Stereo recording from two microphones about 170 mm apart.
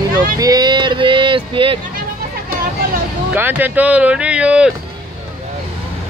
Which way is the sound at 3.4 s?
10° right (ahead or behind).